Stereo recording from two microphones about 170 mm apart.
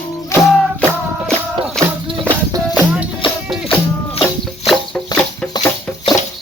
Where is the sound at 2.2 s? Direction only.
10° right (ahead or behind).